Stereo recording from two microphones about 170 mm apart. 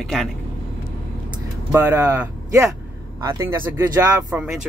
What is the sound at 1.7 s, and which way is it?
Speech, 10° right (ahead or behind).